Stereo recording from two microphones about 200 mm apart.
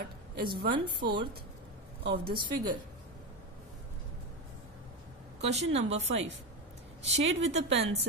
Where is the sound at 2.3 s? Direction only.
25° right (ahead or behind).